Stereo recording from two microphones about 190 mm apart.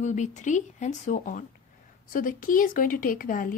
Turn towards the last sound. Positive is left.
turn(degrees=45)  # may be behind; listen again after turning